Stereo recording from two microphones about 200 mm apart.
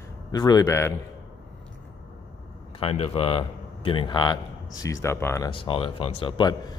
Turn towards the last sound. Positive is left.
turn(degrees=20)  # may be behind; listen again after turning